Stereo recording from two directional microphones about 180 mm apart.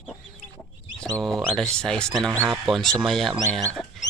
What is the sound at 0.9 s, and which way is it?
Speech, 5° left (ahead or behind).